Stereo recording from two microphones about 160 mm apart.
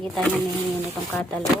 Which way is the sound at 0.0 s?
5° left (ahead or behind).